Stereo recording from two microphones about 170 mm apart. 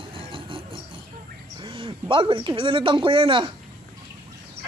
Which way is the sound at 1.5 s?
30° right (ahead or behind).